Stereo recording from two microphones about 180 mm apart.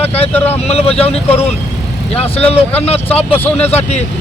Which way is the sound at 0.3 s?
10° left (ahead or behind).